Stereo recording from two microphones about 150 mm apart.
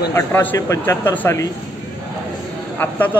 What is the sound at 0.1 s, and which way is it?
Speech, 15° left (ahead or behind).